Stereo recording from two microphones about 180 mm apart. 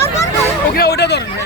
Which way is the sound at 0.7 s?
60° left (ahead or behind).